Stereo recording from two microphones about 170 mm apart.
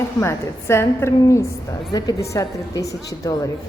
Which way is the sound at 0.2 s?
15° left (ahead or behind).